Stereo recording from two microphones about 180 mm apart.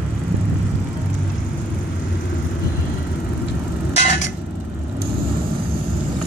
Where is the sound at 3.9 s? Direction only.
40° left (ahead or behind).